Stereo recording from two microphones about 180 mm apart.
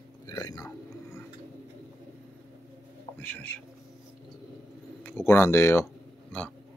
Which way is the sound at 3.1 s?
10° left (ahead or behind).